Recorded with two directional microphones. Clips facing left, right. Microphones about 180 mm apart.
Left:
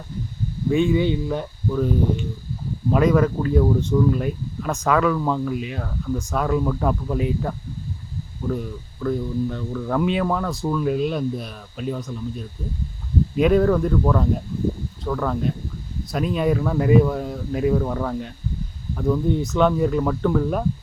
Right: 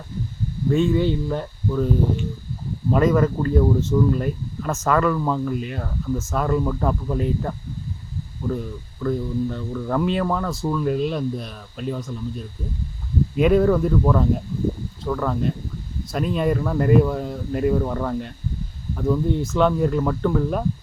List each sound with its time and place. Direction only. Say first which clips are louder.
0.7 s speech: even; 10° left (ahead or behind)
2.9 s speech: even; centre (ahead or behind)